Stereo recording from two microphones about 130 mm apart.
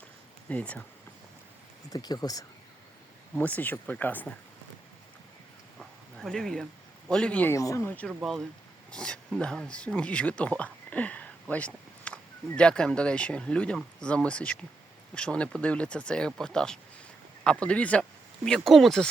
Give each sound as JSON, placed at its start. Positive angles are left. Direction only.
{"t": 0.4, "sound": "speech", "side_deg": 10}
{"t": 1.9, "sound": "speech", "side_deg": 30}
{"t": 3.3, "sound": "speech", "side_deg": 10}
{"t": 5.8, "sound": "a sound", "side_deg": 0}
{"t": 7.1, "sound": "speech", "side_deg": 10}
{"t": 7.5, "sound": "speech", "side_deg": 25}
{"t": 8.0, "sound": "speech", "side_deg": 0}